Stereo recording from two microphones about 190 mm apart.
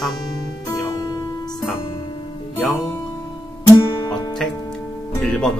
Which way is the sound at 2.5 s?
5° left (ahead or behind).